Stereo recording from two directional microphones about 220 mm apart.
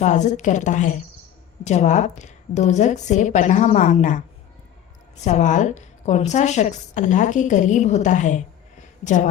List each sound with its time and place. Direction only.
0.0 s a woman's voice: 35° left (ahead or behind)
5.2 s a woman's voice: 35° left (ahead or behind)